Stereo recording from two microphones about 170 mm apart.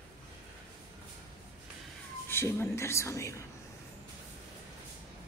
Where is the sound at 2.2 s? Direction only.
15° left (ahead or behind).